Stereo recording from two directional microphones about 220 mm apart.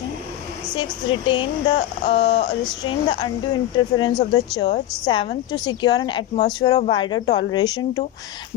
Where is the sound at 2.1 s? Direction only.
50° left (ahead or behind).